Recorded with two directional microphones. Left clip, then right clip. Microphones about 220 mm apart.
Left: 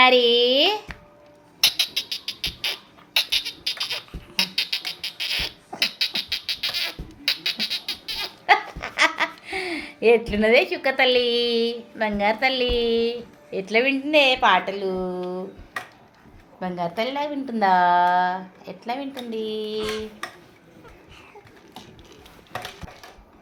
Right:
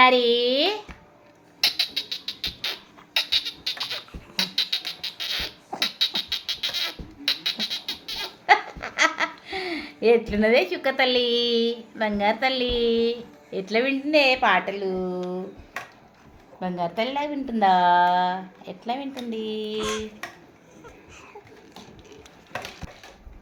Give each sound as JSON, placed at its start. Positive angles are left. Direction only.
{"t": 0.0, "sound": "a sound", "side_deg": 0}
{"t": 1.6, "sound": "music", "side_deg": 5}
{"t": 5.8, "sound": "beatboxing", "side_deg": 0}
{"t": 15.3, "sound": "a woman's voice", "side_deg": 0}
{"t": 19.8, "sound": "dishes", "side_deg": -25}